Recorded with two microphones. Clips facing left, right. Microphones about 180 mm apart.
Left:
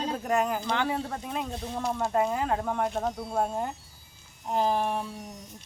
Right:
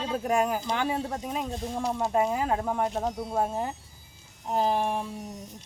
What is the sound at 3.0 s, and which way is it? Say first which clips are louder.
Speech: right 1 dB; 15° right (ahead or behind).